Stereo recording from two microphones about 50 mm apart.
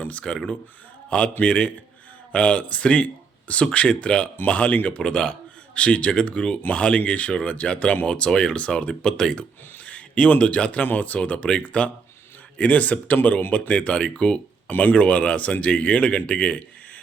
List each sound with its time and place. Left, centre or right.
0.0 s speech: left
1.4 s speech: left
5.0 s speech: centre
8.5 s speech: left
9.7 s a sound: left
10.9 s speech: left
14.7 s speech: left
14.9 s speech: left